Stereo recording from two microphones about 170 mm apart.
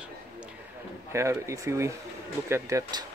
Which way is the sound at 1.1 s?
15° right (ahead or behind).